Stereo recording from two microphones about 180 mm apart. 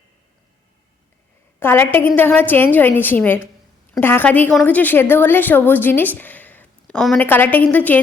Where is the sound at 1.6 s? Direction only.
10° left (ahead or behind).